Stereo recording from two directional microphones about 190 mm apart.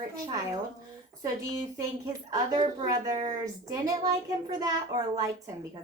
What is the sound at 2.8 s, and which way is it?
A woman's voice, 20° right (ahead or behind).